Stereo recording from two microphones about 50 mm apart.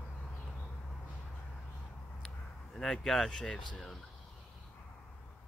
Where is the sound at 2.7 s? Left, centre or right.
Centre.